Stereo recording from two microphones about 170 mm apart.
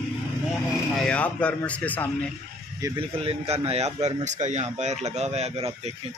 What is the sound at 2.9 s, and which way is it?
Speech, 35° right (ahead or behind).